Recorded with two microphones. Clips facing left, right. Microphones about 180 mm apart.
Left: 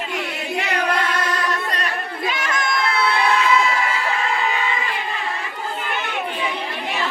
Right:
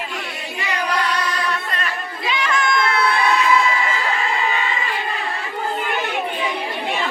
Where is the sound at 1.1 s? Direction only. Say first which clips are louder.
Even; 40° left (ahead or behind).